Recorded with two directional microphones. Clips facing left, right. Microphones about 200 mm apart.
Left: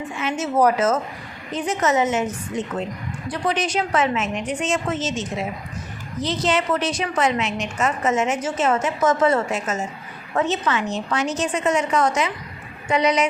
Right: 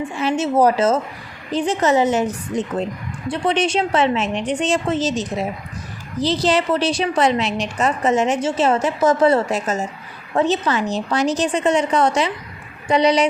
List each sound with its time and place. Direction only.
0.2 s a woman's voice: 30° right (ahead or behind)